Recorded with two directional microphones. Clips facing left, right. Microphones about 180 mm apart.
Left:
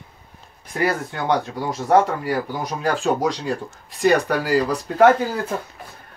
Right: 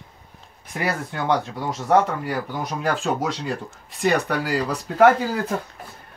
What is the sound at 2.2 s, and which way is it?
Speech, centre (ahead or behind).